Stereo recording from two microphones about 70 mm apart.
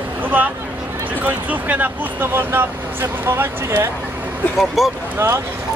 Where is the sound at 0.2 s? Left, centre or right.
Right.